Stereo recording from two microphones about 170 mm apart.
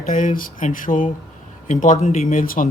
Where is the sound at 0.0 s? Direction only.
50° left (ahead or behind).